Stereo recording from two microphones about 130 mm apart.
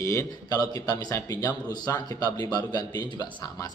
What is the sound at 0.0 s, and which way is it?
A man's voice, 20° left (ahead or behind).